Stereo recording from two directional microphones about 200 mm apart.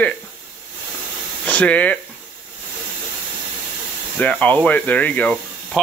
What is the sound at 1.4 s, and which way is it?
Speech, 5° left (ahead or behind).